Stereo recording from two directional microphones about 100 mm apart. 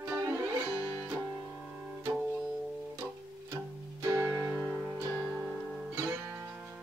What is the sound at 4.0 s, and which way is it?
Music, 30° right (ahead or behind).